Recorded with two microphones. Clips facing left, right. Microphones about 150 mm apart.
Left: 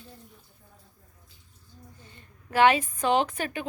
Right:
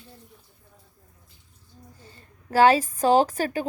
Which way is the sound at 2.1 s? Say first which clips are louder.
Right 5 dB; 35° right (ahead or behind).